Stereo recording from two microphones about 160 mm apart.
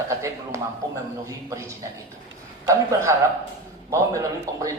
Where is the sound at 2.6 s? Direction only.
20° right (ahead or behind).